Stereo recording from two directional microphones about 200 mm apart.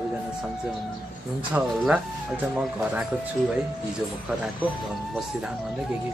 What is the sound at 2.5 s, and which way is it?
Speech, 5° right (ahead or behind).